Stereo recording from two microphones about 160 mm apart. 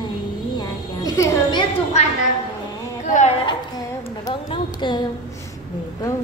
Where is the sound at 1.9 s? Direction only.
45° left (ahead or behind).